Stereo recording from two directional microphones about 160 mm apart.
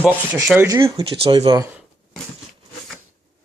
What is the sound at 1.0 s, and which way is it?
Speech, 35° right (ahead or behind).